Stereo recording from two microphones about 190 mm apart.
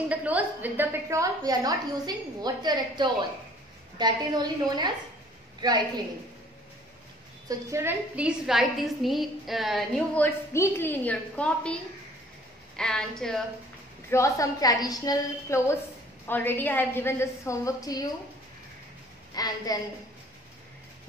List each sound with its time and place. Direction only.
0.1 s a woman's voice: 10° right (ahead or behind)
7.4 s a woman's voice: 15° right (ahead or behind); by 13.4 s 5° left (ahead or behind)
14.1 s a woman's voice: 15° left (ahead or behind)
19.3 s a woman's voice: 20° left (ahead or behind)